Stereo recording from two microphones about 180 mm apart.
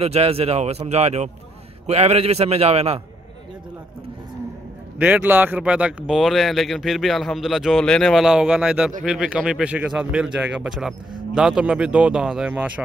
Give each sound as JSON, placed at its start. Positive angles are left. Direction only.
{"t": 0.0, "sound": "speech", "side_deg": -35}
{"t": 4.9, "sound": "speech", "side_deg": -10}